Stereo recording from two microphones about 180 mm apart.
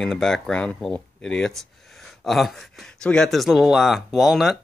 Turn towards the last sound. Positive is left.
turn(degrees=0)  # may be behind; listen again after turning